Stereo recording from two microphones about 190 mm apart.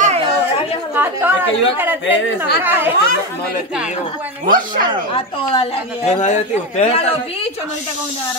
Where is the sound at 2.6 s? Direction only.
10° right (ahead or behind).